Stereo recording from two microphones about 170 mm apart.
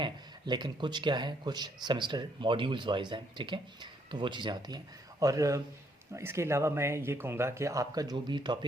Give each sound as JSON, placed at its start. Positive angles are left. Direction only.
{"t": 0.0, "sound": "speech", "side_deg": -25}